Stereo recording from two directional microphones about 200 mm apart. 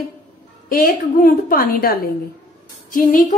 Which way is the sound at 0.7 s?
45° left (ahead or behind).